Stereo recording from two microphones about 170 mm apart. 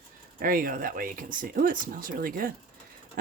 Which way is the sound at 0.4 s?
55° right (ahead or behind).